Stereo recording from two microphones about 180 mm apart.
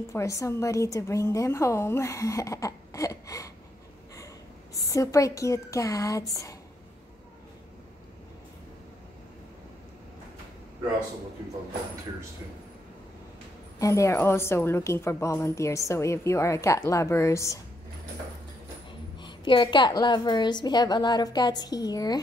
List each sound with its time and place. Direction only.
0.1 s a woman's voice: 15° left (ahead or behind)
4.7 s a woman's voice: 20° left (ahead or behind)
13.7 s a woman's voice: 15° left (ahead or behind)
18.9 s a woman's voice: 25° left (ahead or behind)